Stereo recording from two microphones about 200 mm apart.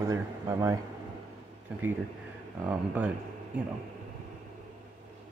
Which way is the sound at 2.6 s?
5° right (ahead or behind).